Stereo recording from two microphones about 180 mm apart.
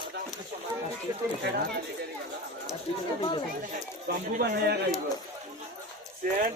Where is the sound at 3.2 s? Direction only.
25° left (ahead or behind).